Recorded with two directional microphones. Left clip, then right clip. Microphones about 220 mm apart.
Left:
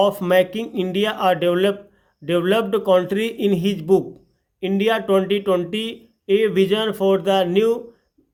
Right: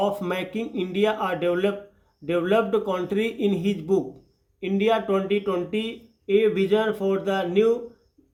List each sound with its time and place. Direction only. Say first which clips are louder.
0.0 s speech: left 9 dB; 40° left (ahead or behind)